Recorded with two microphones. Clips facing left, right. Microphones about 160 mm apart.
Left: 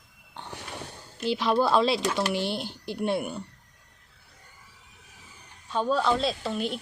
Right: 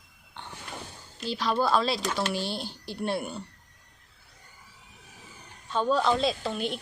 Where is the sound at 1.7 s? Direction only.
25° left (ahead or behind).